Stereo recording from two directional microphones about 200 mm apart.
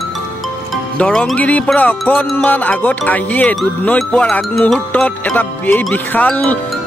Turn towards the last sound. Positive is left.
turn(degrees=5)  # may be behind; listen again after turning